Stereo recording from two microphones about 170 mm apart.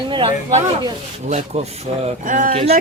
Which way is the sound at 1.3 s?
40° right (ahead or behind).